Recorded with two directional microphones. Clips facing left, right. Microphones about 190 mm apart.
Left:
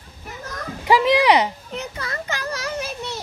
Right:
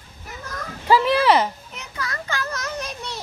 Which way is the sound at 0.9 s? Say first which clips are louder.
Left 1 dB; 15° left (ahead or behind).